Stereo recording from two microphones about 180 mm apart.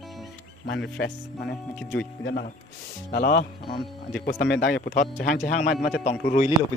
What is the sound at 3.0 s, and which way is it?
Speech, 55° left (ahead or behind).